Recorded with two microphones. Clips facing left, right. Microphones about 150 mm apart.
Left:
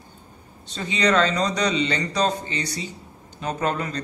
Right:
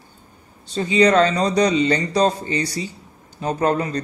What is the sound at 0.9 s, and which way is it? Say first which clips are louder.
Speech: right 5 dB; 35° right (ahead or behind).